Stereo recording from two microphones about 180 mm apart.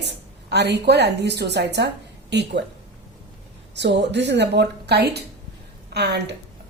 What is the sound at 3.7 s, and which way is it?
A woman's voice, 75° right (ahead or behind).